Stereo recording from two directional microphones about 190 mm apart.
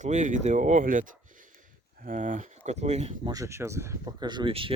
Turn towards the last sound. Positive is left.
turn(degrees=-25)  # may be behind; listen again after turning